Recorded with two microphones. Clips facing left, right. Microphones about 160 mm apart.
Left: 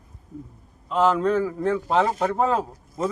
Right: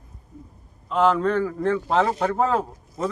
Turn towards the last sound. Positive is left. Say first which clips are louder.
# even
turn(degrees=0)  # may be behind; listen again after turning